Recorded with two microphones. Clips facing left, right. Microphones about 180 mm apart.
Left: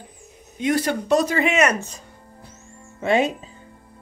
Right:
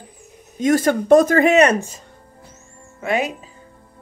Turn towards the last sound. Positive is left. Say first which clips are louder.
# left 2 dB
turn(degrees=25)  # may be behind; listen again after turning